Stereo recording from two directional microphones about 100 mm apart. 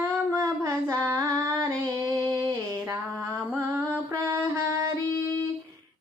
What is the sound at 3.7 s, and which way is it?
Music, 30° right (ahead or behind).